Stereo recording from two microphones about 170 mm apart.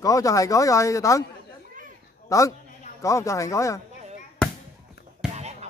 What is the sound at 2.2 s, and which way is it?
A man's voice, 20° left (ahead or behind).